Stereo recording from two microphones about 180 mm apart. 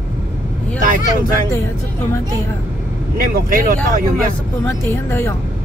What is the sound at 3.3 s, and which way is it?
Speech, 50° right (ahead or behind).